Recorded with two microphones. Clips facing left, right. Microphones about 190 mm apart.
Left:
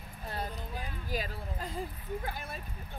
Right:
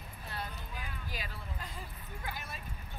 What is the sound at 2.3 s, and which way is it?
Speech, 55° left (ahead or behind).